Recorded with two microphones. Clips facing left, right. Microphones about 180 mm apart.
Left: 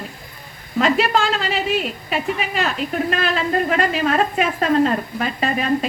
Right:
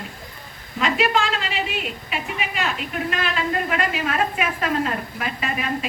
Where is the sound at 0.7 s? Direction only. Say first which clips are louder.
Left 4 dB; 40° left (ahead or behind).